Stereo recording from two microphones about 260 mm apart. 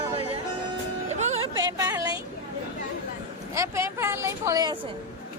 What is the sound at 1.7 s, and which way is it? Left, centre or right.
Speech, centre.